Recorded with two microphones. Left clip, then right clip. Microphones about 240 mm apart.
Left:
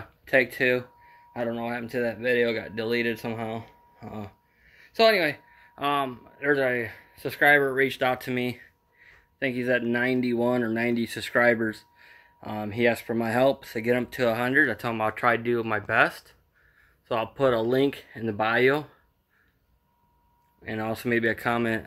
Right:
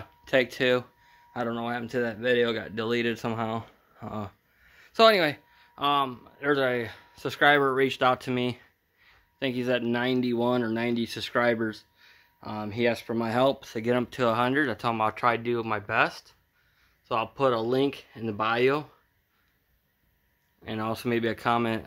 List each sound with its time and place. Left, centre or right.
0.3 s speech: centre
5.6 s speech: centre
20.6 s speech: centre